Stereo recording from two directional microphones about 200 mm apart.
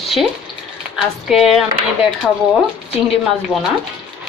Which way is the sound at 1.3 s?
Centre (ahead or behind).